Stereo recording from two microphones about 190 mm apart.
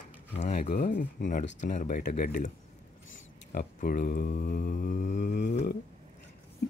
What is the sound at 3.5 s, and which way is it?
Speech, 50° left (ahead or behind).